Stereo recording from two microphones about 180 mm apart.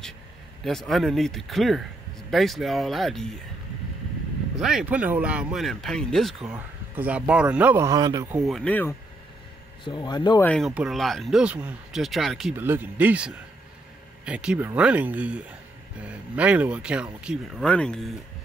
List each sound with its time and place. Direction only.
0.7 s speech: centre (ahead or behind)
4.6 s speech: centre (ahead or behind); by 8.3 s 20° right (ahead or behind)
8.3 s speech: centre (ahead or behind)
9.8 s speech: 25° left (ahead or behind)
10.4 s speech: 5° left (ahead or behind)
12.5 s speech: 10° right (ahead or behind)